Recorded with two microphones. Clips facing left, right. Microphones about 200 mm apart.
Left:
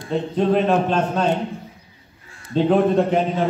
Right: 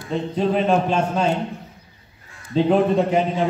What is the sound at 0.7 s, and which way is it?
Speech, 10° right (ahead or behind).